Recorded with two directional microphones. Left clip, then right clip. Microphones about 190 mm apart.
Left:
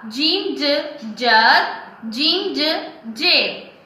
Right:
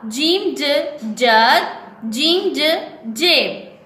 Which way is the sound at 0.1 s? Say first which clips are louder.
Right 2 dB; 55° right (ahead or behind).